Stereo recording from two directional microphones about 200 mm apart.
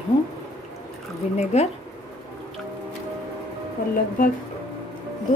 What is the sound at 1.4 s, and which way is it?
Speech, 35° left (ahead or behind).